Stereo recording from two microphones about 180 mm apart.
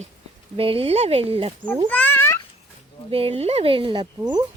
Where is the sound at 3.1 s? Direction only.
35° right (ahead or behind).